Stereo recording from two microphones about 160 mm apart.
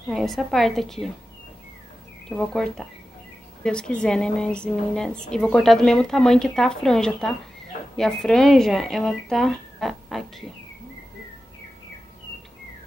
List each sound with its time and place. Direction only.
0.1 s a woman's voice: centre (ahead or behind)
2.2 s a woman's voice: 5° left (ahead or behind)